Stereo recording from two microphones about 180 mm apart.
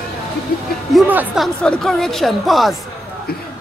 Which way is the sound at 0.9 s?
5° right (ahead or behind).